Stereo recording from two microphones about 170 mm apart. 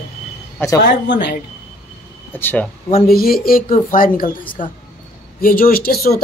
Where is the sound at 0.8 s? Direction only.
90° left.